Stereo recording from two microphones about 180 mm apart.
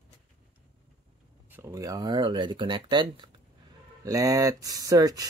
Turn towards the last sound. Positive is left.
turn(degrees=-20)  # may be behind; listen again after turning